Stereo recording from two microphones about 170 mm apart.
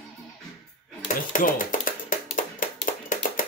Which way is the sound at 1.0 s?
50° left (ahead or behind).